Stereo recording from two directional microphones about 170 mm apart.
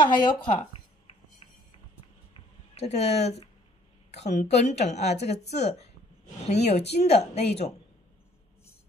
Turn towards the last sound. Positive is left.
turn(degrees=40)  # may be behind; listen again after turning